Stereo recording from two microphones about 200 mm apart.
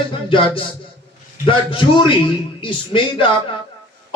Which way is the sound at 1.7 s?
25° left (ahead or behind).